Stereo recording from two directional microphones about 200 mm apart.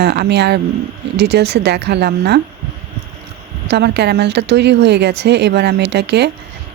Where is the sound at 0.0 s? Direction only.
55° right (ahead or behind).